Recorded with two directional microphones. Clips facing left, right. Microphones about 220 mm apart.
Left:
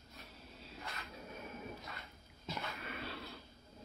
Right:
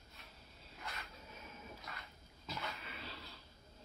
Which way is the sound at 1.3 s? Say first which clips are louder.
Left 7 dB; 60° left (ahead or behind).